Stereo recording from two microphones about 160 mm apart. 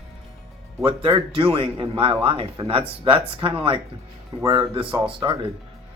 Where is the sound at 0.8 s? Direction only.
35° right (ahead or behind).